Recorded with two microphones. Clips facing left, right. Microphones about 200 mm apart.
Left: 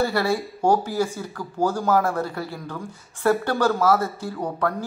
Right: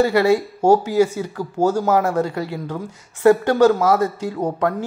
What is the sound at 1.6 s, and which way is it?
Speech, 45° right (ahead or behind).